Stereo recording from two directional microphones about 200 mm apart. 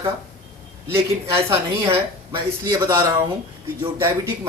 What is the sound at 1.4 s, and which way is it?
Speech, 10° right (ahead or behind).